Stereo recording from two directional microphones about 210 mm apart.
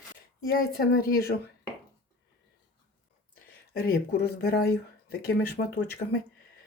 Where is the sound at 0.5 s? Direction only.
45° left (ahead or behind).